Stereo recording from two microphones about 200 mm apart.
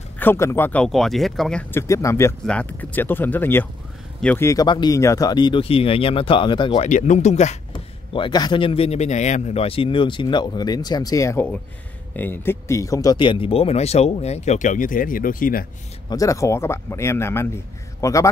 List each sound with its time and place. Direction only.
0.2 s speech: 10° left (ahead or behind)
6.9 s speech: 40° left (ahead or behind)
7.7 s speech: 25° left (ahead or behind); by 15.6 s 45° left (ahead or behind)
16.1 s speech: 15° left (ahead or behind)